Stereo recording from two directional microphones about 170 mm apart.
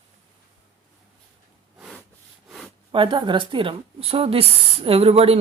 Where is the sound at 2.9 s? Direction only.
30° right (ahead or behind).